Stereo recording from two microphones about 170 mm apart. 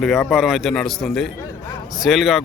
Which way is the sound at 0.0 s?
Centre (ahead or behind).